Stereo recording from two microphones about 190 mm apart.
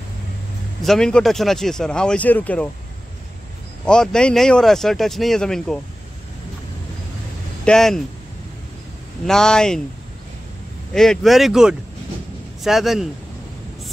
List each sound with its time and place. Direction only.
0.8 s speech: 5° left (ahead or behind)
3.8 s speech: 5° left (ahead or behind)
7.6 s speech: 5° left (ahead or behind)
9.2 s speech: 5° left (ahead or behind)
10.9 s speech: 5° left (ahead or behind)